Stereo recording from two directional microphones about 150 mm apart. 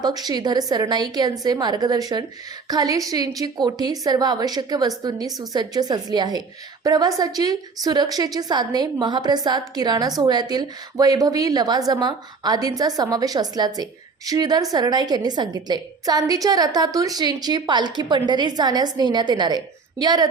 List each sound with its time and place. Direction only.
0.0 s a woman's voice: 25° right (ahead or behind)